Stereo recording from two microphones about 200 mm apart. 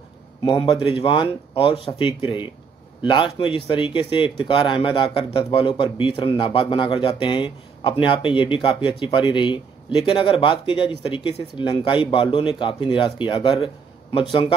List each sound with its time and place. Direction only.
0.5 s speech: 25° left (ahead or behind)